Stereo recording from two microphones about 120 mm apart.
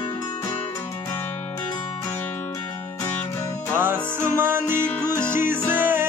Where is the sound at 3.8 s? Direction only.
20° right (ahead or behind).